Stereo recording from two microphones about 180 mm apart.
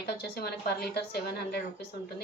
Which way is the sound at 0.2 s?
60° left (ahead or behind).